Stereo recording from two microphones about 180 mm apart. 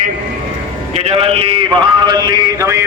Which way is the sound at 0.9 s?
35° right (ahead or behind).